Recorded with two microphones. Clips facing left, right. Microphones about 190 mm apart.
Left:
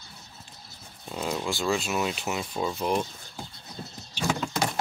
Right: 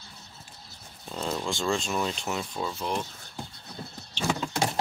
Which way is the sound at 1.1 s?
10° left (ahead or behind).